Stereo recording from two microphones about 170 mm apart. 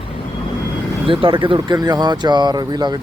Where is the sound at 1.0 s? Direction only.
30° right (ahead or behind).